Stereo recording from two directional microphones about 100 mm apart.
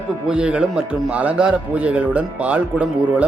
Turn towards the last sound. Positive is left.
turn(degrees=-15)  # may be behind; listen again after turning